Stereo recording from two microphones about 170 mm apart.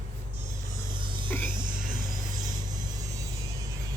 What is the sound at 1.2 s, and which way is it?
Music, 10° left (ahead or behind).